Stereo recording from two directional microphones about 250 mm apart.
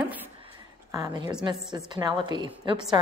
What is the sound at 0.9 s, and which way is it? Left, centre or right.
Speech, centre.